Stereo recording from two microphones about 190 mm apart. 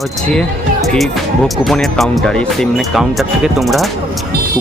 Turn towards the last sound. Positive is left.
turn(degrees=0)  # may be behind; listen again after turning